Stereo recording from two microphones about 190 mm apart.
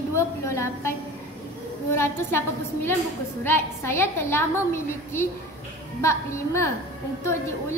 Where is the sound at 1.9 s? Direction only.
15° left (ahead or behind).